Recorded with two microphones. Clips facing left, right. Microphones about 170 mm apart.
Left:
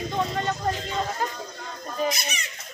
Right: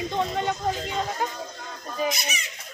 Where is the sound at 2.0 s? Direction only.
Centre (ahead or behind).